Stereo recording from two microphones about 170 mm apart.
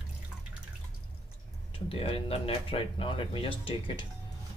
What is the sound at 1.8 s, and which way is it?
Speech, 35° left (ahead or behind).